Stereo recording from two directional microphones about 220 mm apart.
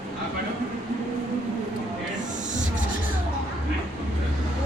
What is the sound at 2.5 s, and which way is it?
Music, 35° right (ahead or behind).